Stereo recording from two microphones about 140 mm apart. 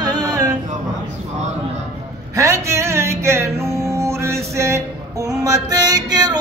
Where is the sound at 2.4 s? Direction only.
20° right (ahead or behind).